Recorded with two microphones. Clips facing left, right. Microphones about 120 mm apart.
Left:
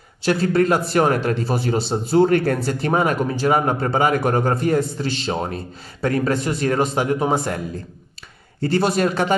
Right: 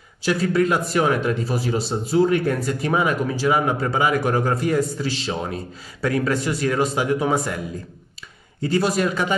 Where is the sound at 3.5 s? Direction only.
45° left (ahead or behind).